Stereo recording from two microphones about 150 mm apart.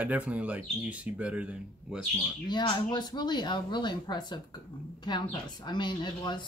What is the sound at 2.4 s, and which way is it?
Speech, 30° left (ahead or behind).